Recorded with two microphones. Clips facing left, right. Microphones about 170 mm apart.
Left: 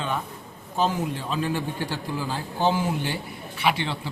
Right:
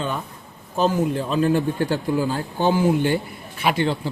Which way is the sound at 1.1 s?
50° right (ahead or behind).